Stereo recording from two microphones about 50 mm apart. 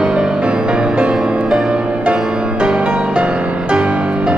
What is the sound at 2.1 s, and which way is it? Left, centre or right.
Music, centre.